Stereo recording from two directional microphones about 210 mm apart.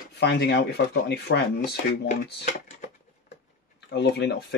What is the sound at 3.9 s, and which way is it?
Speech, 55° left (ahead or behind).